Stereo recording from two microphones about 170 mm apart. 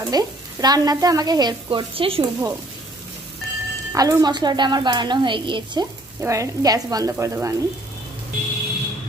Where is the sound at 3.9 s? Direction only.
20° right (ahead or behind).